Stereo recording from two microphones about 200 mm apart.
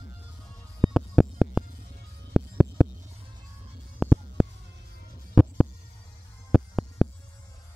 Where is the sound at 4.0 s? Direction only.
Centre (ahead or behind).